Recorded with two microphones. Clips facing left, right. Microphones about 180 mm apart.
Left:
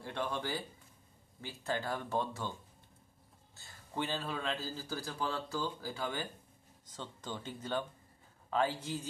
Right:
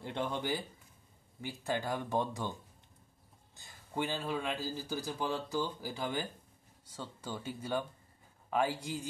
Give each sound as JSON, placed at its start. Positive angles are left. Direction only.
{"t": 0.0, "sound": "a man's voice", "side_deg": -20}
{"t": 3.5, "sound": "a man's voice", "side_deg": -15}